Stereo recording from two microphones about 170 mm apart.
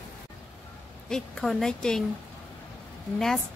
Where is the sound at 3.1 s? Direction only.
5° left (ahead or behind).